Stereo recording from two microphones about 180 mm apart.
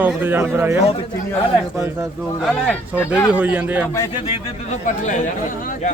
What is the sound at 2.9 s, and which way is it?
Speech, 10° right (ahead or behind).